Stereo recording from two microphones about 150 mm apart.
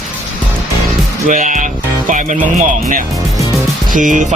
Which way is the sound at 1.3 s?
60° right (ahead or behind).